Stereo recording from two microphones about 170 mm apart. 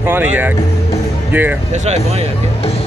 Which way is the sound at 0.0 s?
10° right (ahead or behind).